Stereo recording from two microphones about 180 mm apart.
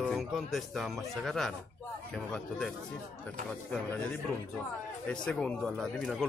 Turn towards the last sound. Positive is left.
turn(degrees=0)  # may be behind; listen again after turning